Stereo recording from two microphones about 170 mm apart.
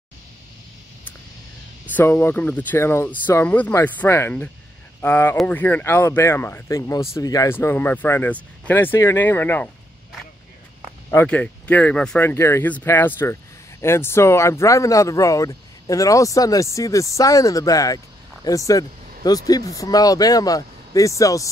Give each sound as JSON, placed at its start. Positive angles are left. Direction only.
{"t": 1.9, "sound": "speech", "side_deg": 10}
{"t": 11.1, "sound": "speech", "side_deg": 10}